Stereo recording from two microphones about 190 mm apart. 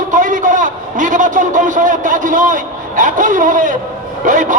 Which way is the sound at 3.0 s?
45° right (ahead or behind).